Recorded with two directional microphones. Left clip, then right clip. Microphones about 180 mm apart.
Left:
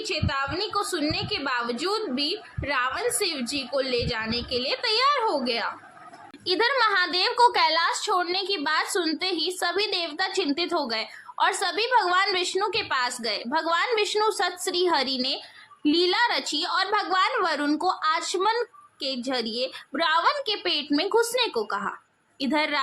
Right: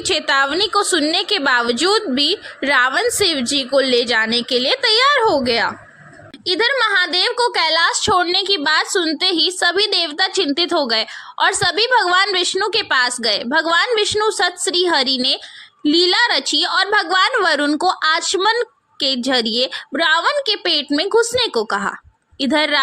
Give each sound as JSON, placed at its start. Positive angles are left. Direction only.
{"t": 0.0, "sound": "a woman's voice", "side_deg": -45}
{"t": 6.4, "sound": "a woman's voice", "side_deg": -25}